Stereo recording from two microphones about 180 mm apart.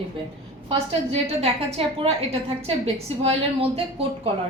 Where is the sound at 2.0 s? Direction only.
35° right (ahead or behind).